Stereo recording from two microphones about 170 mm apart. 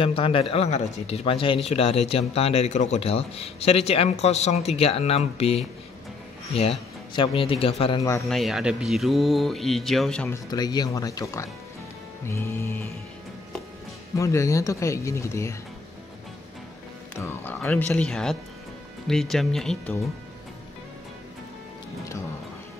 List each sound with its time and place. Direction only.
0.0 s speech: 30° left (ahead or behind)
7.2 s speech: 30° left (ahead or behind)
8.3 s speech: centre (ahead or behind)
10.3 s speech: 25° left (ahead or behind)
14.1 s speech: 20° left (ahead or behind)
17.2 s speech: 15° left (ahead or behind)